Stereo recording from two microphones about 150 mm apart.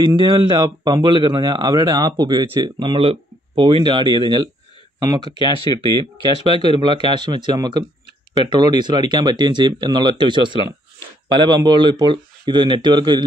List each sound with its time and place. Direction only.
0.0 s a man's voice: 30° right (ahead or behind)